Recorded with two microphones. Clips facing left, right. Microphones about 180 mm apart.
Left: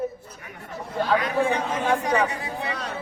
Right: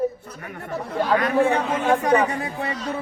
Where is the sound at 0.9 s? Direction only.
60° right (ahead or behind).